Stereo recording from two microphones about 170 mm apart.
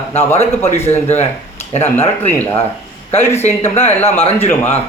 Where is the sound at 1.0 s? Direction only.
40° left (ahead or behind).